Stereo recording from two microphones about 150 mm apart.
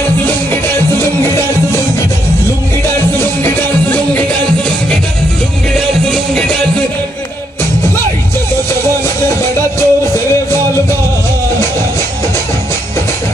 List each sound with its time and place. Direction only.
0.7 s music: 15° left (ahead or behind)
3.2 s music: 10° left (ahead or behind)
9.8 s music: 20° left (ahead or behind)